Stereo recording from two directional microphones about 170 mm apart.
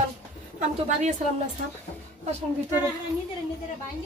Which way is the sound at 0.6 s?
45° right (ahead or behind).